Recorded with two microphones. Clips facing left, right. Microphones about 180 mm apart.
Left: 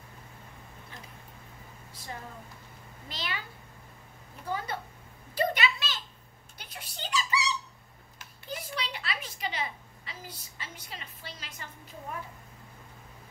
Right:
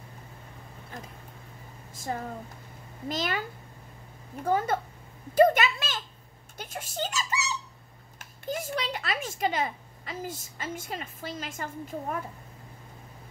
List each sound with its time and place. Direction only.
1.9 s a sound: 45° right (ahead or behind)
3.1 s a child's voice: 45° right (ahead or behind)
4.5 s a child's voice: 45° right (ahead or behind)